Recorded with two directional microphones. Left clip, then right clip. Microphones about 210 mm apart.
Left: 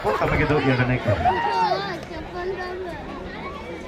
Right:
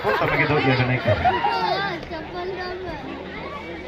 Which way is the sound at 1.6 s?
50° right (ahead or behind).